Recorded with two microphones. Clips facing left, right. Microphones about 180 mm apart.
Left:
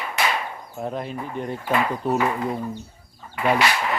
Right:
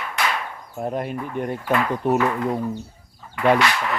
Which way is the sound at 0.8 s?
10° right (ahead or behind).